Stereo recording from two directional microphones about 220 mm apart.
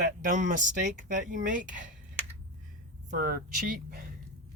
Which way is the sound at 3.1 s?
40° right (ahead or behind).